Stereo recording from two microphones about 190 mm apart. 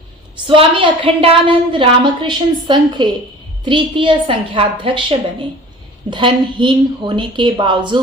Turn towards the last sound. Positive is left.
turn(degrees=-25)  # may be behind; listen again after turning